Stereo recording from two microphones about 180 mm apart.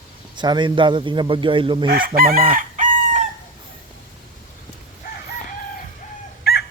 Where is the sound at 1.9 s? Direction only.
55° right (ahead or behind).